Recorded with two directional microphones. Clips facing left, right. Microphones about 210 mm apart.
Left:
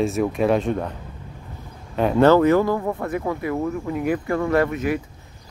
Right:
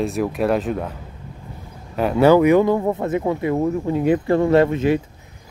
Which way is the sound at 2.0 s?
5° right (ahead or behind).